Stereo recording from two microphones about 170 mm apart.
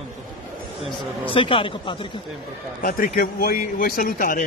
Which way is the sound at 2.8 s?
55° left (ahead or behind).